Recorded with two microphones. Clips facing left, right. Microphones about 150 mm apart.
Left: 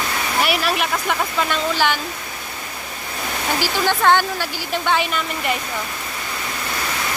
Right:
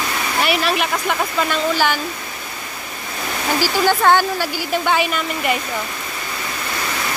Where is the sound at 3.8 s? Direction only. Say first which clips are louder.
Right 1 dB; 5° right (ahead or behind).